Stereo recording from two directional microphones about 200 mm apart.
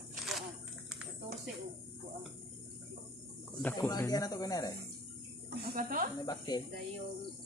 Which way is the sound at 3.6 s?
15° left (ahead or behind).